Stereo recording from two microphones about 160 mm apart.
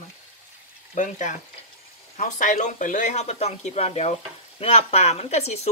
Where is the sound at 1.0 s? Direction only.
50° left (ahead or behind).